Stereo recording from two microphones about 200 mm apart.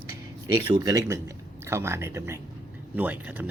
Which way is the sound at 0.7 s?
15° right (ahead or behind).